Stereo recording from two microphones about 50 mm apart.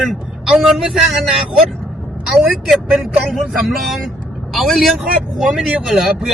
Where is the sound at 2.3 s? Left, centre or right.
Centre.